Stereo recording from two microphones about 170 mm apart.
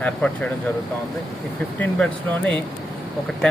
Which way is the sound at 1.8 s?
5° left (ahead or behind).